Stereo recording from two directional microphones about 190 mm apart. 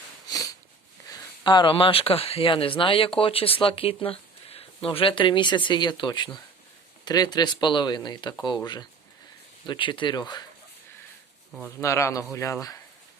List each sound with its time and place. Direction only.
0.3 s sniff: 20° left (ahead or behind)
1.0 s speech: 20° left (ahead or behind)
11.8 s speech: 15° left (ahead or behind)